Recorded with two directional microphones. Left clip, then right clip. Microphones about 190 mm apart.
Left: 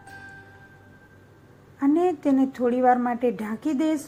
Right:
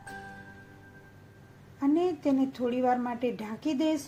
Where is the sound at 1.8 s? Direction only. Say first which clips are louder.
Left 5 dB; 15° left (ahead or behind).